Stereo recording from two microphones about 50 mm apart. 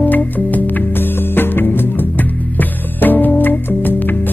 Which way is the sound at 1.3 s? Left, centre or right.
Left.